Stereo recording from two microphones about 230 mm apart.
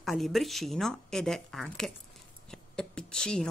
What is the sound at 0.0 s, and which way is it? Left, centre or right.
A woman's voice, centre.